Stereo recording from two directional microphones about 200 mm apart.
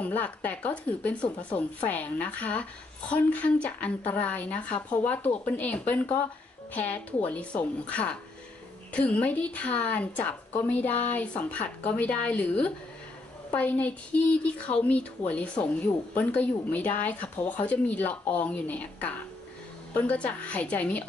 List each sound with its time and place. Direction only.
0.0 s a woman's voice: 5° left (ahead or behind)